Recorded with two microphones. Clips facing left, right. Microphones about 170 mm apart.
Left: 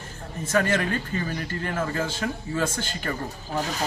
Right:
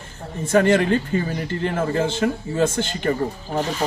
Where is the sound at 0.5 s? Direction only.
30° right (ahead or behind).